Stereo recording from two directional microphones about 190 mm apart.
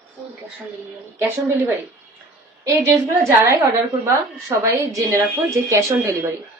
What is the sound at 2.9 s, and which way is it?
A woman's voice, 15° right (ahead or behind).